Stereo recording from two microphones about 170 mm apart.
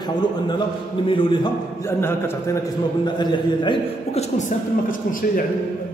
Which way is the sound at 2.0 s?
15° left (ahead or behind).